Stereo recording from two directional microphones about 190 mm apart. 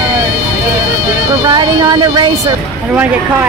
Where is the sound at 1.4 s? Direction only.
20° right (ahead or behind).